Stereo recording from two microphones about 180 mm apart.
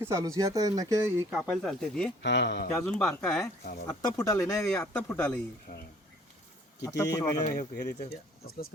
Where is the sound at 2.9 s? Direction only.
Centre (ahead or behind).